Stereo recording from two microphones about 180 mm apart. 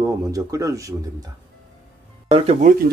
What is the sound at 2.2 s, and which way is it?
Speech, 30° right (ahead or behind).